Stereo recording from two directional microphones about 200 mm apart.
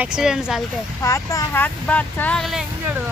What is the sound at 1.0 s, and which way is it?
Speech, 15° left (ahead or behind).